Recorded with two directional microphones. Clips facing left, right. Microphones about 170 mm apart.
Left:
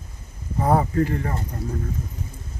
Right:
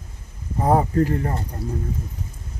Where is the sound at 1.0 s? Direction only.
35° right (ahead or behind).